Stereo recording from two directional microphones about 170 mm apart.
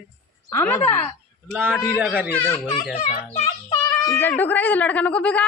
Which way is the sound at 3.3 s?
20° left (ahead or behind).